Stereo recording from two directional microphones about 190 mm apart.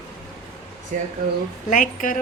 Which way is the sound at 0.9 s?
45° right (ahead or behind).